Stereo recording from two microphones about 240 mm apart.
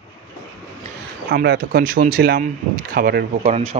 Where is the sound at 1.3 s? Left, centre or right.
Right.